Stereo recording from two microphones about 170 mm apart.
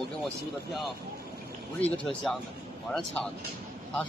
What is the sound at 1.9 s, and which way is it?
Speech, centre (ahead or behind).